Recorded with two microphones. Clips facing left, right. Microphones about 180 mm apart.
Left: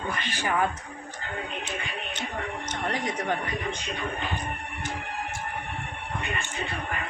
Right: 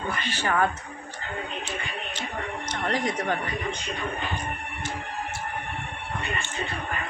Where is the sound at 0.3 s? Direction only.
15° left (ahead or behind).